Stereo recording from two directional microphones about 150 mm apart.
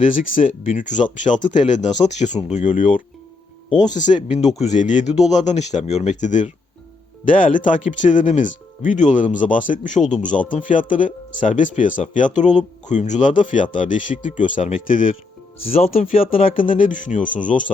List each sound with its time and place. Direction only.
0.1 s speech: 60° left (ahead or behind)
15.7 s speech: 45° left (ahead or behind)
16.6 s speech: 65° left (ahead or behind)